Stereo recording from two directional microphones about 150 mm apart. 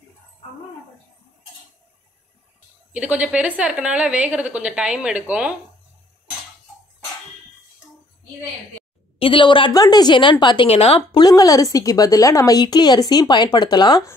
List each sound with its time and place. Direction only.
2.9 s a woman's voice: 10° right (ahead or behind)
9.2 s a woman's voice: 35° left (ahead or behind)
10.7 s speech: 40° left (ahead or behind)
11.1 s a woman's voice: 25° left (ahead or behind)